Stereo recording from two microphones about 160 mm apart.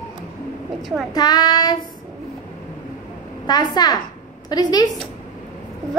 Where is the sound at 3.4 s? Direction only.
25° left (ahead or behind).